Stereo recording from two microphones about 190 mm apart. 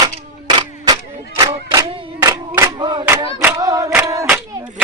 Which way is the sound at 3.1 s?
15° right (ahead or behind).